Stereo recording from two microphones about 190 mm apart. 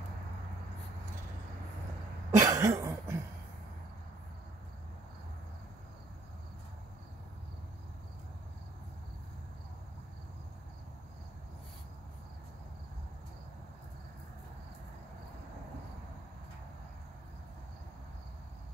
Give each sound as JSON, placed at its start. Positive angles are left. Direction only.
{"t": 2.3, "sound": "cough", "side_deg": -15}